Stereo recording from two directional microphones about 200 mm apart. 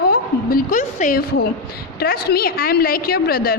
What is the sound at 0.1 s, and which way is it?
A woman's voice, 45° left (ahead or behind).